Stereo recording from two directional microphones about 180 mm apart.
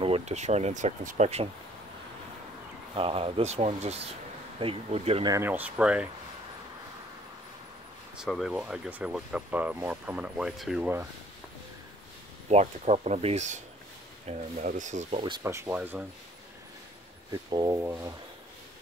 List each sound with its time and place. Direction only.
0.0 s speech: 35° right (ahead or behind)
3.0 s speech: 30° right (ahead or behind)
5.2 s speech: 15° right (ahead or behind)
8.2 s speech: centre (ahead or behind)
12.4 s speech: 40° right (ahead or behind)
15.4 s speech: 15° right (ahead or behind)
17.3 s speech: 20° right (ahead or behind)